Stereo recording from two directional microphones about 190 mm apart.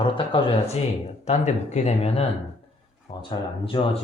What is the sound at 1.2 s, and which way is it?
Speech, 35° left (ahead or behind).